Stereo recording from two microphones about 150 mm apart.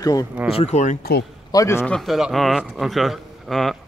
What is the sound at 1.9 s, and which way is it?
A man's voice, centre (ahead or behind).